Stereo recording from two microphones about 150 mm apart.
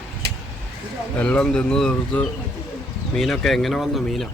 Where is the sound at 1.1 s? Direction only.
5° left (ahead or behind).